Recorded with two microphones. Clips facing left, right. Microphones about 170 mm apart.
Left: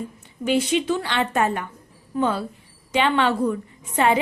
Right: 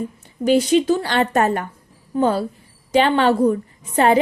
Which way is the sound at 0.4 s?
40° right (ahead or behind).